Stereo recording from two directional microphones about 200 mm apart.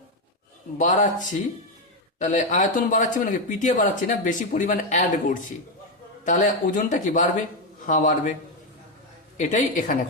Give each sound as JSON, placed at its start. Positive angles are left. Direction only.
{"t": 0.8, "sound": "speech", "side_deg": 40}
{"t": 2.2, "sound": "speech", "side_deg": 40}
{"t": 9.4, "sound": "speech", "side_deg": 40}